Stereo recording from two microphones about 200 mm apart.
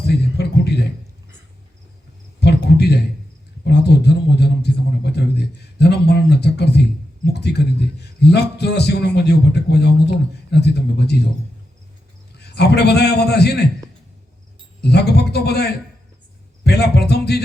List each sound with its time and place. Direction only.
0.0 s a sound: 55° left (ahead or behind)
2.4 s cricket: 55° left (ahead or behind)
3.6 s a sound: 60° left (ahead or behind)
7.3 s a man's voice: 55° left (ahead or behind)
12.4 s a man's voice: 55° left (ahead or behind)
14.8 s a man's voice: 55° left (ahead or behind)